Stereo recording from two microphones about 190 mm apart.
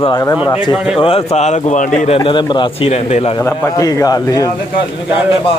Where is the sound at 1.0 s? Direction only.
30° left (ahead or behind).